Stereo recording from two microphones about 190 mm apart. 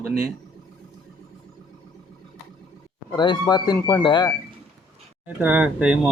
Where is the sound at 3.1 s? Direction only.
20° left (ahead or behind).